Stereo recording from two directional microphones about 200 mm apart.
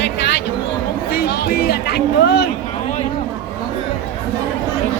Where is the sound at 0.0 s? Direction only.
60° left (ahead or behind).